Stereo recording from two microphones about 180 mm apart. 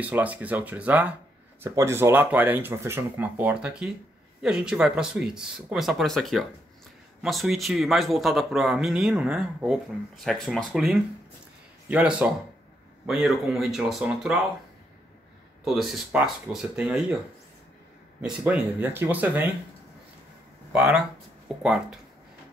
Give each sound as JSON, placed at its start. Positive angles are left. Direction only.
{"t": 0.0, "sound": "speech", "side_deg": -10}
{"t": 15.6, "sound": "speech", "side_deg": 0}
{"t": 18.2, "sound": "speech", "side_deg": -5}
{"t": 21.5, "sound": "speech", "side_deg": 0}